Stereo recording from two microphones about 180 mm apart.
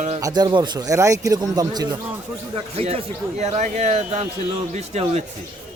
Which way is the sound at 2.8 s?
35° right (ahead or behind).